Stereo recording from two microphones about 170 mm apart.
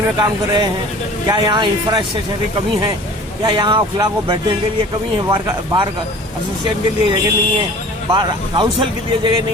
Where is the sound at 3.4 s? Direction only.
25° right (ahead or behind).